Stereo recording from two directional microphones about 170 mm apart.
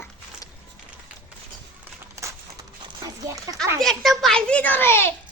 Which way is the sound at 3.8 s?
Centre (ahead or behind).